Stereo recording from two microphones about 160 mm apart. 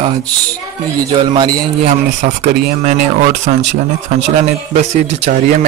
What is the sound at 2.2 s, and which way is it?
Speech, 50° right (ahead or behind).